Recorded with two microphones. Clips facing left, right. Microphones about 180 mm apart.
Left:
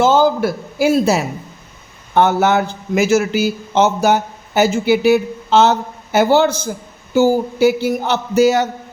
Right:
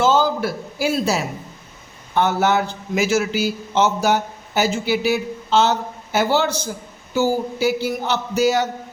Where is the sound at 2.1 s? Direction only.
55° left (ahead or behind).